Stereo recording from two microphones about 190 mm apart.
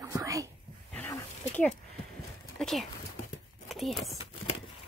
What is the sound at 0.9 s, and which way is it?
Wild animals, 10° left (ahead or behind).